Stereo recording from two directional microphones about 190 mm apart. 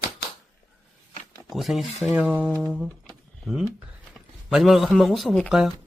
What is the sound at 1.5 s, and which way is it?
Speech, centre (ahead or behind).